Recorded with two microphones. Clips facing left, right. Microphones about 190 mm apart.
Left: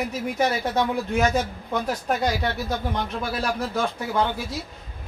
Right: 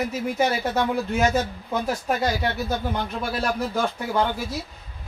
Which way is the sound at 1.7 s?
5° right (ahead or behind).